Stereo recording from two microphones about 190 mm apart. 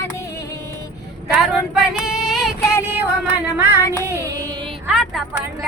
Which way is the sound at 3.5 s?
10° right (ahead or behind).